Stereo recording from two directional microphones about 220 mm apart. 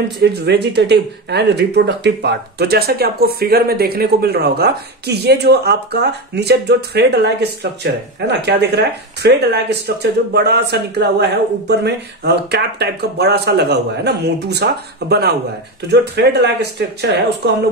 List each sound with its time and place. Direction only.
0.2 s speech: 50° right (ahead or behind)